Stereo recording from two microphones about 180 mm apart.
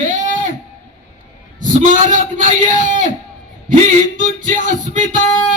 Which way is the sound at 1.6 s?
45° right (ahead or behind).